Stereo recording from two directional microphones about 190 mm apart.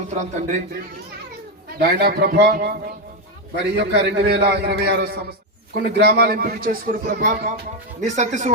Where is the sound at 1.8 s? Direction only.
55° right (ahead or behind).